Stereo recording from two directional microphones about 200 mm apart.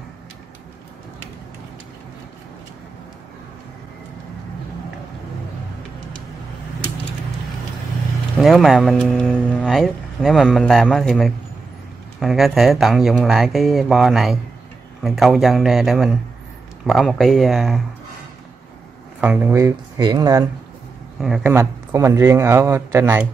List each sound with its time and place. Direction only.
8.4 s speech: centre (ahead or behind)
19.2 s speech: 10° right (ahead or behind)
21.2 s speech: 5° right (ahead or behind)